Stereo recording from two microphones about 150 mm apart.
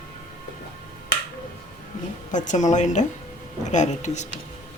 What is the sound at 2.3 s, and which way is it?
Speech, 55° left (ahead or behind).